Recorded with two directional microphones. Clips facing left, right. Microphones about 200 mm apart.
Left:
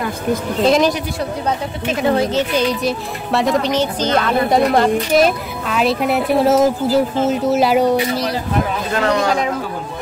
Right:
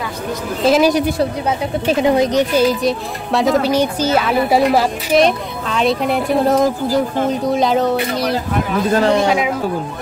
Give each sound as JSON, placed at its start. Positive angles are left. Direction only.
{"t": 0.7, "sound": "a child's voice", "side_deg": -5}
{"t": 2.0, "sound": "a child's voice", "side_deg": -15}
{"t": 8.9, "sound": "speech", "side_deg": -30}